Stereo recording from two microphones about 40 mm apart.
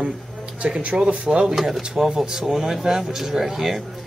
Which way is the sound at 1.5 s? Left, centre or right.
Centre.